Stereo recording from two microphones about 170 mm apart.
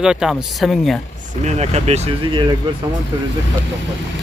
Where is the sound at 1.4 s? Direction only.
40° right (ahead or behind).